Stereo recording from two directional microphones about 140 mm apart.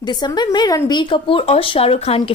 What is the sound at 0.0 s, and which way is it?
A woman's voice, 30° left (ahead or behind).